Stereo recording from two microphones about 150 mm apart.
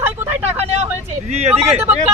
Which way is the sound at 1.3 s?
45° right (ahead or behind).